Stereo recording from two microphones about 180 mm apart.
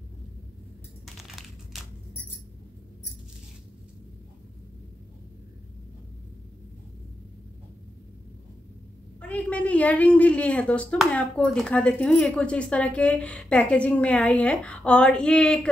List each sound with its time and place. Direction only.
1.0 s crumpling: centre (ahead or behind)
9.2 s a woman's voice: 5° left (ahead or behind)